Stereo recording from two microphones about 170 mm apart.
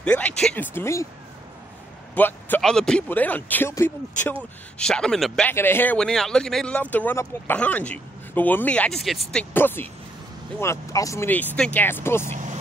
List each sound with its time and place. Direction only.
0.0 s a man's voice: 10° left (ahead or behind)
2.1 s a man's voice: 10° left (ahead or behind)
12.3 s vehicle: 45° right (ahead or behind)